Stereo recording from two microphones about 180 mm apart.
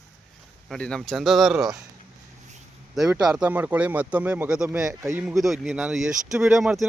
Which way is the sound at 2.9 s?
Centre (ahead or behind).